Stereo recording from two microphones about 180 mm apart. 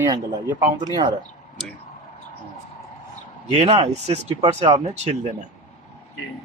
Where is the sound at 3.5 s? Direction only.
35° right (ahead or behind).